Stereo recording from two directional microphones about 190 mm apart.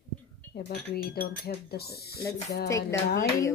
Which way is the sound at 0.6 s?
50° left (ahead or behind).